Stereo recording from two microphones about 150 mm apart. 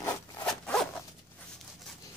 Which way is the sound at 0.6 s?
5° left (ahead or behind).